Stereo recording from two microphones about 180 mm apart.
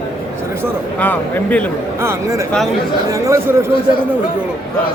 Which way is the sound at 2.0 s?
15° right (ahead or behind).